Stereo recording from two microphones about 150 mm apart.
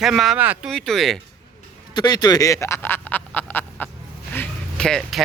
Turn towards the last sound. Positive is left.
turn(degrees=5)  # may be behind; listen again after turning